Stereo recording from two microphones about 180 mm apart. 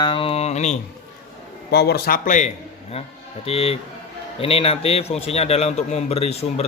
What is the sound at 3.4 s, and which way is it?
A man's voice, 35° left (ahead or behind).